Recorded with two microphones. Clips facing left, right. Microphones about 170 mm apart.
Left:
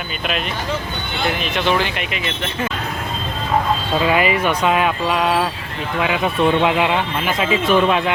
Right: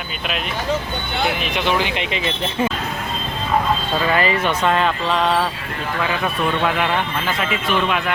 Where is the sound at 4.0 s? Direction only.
10° left (ahead or behind).